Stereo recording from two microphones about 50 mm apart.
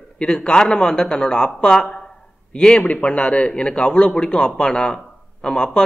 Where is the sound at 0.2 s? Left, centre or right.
Centre.